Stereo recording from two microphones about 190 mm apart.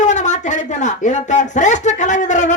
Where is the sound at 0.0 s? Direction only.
40° left (ahead or behind).